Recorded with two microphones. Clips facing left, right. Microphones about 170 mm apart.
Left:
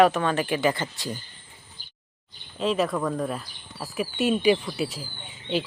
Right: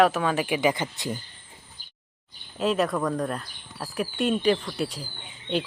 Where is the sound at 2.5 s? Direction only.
Centre (ahead or behind).